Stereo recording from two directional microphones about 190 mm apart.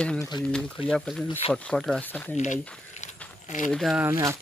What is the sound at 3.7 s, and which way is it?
Speech, centre (ahead or behind).